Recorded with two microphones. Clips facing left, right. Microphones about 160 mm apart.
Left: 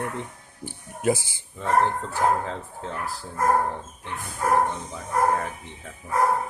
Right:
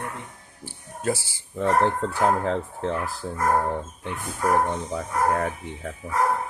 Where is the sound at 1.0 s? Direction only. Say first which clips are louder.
Left 3 dB; 15° left (ahead or behind).